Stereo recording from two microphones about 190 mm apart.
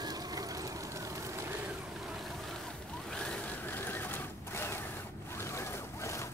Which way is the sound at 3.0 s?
5° left (ahead or behind).